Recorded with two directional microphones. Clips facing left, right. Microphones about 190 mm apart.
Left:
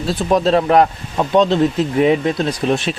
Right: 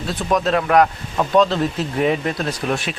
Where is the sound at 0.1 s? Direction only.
30° left (ahead or behind).